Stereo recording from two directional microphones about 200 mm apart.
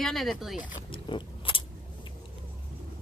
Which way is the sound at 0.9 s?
25° left (ahead or behind).